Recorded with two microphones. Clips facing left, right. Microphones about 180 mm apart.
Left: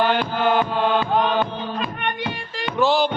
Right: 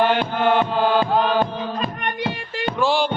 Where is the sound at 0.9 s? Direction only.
40° right (ahead or behind).